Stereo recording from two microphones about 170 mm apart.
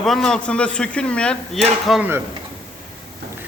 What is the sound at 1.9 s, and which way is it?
Speech, 10° right (ahead or behind).